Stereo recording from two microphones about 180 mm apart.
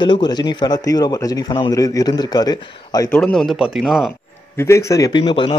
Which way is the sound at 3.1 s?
5° left (ahead or behind).